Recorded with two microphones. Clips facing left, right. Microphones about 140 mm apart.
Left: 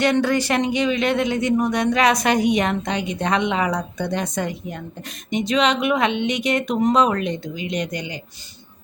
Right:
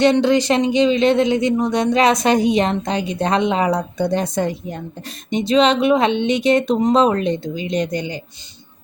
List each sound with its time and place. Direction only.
0.0 s a woman's voice: 20° right (ahead or behind)